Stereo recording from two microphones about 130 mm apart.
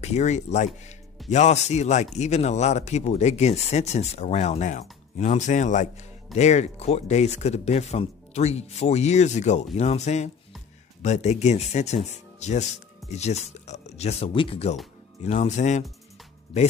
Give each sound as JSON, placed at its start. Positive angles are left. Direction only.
{"t": 0.0, "sound": "speech", "side_deg": 60}
{"t": 6.3, "sound": "speech", "side_deg": 60}
{"t": 15.2, "sound": "speech", "side_deg": 65}